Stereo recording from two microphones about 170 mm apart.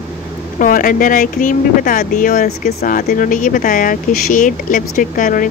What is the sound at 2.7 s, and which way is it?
Speech, 60° left (ahead or behind).